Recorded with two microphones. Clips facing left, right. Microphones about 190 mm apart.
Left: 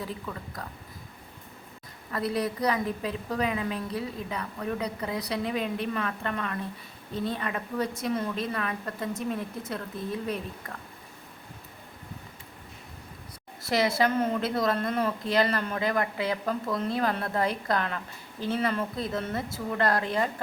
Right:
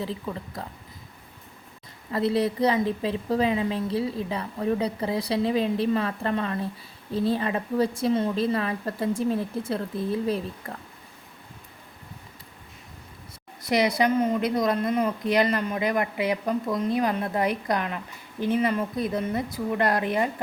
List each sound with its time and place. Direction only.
0.0 s a woman's voice: 25° right (ahead or behind)
2.1 s a woman's voice: 25° right (ahead or behind)
13.7 s a woman's voice: 15° right (ahead or behind)